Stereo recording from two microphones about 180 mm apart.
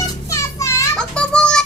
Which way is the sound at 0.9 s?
5° left (ahead or behind).